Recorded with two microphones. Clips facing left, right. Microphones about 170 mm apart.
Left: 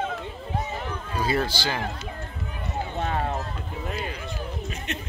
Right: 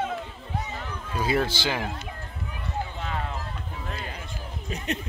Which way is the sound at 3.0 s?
45° left (ahead or behind).